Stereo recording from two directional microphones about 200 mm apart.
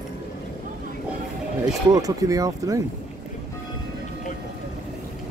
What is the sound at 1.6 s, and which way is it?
Speech, 20° right (ahead or behind).